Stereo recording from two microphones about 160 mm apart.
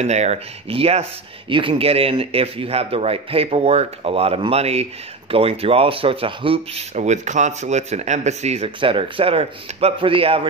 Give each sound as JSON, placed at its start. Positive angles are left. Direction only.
{"t": 0.0, "sound": "speech", "side_deg": -45}
{"t": 7.0, "sound": "speech", "side_deg": -50}